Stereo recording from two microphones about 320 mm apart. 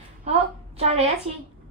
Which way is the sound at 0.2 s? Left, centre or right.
Centre.